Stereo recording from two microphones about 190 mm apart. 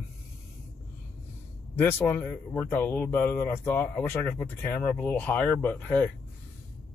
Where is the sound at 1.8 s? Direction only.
10° left (ahead or behind).